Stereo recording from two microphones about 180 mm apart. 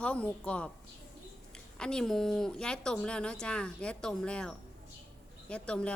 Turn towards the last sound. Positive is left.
turn(degrees=5)  # may be behind; listen again after turning